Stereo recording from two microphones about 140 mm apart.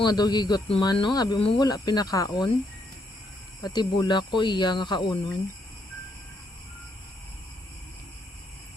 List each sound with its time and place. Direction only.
0.0 s speech: 30° left (ahead or behind)
3.6 s speech: 30° left (ahead or behind)